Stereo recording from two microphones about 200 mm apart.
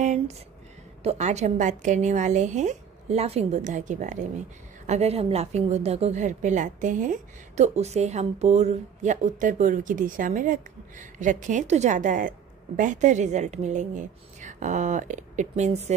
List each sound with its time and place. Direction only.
1.0 s a woman's voice: 35° right (ahead or behind)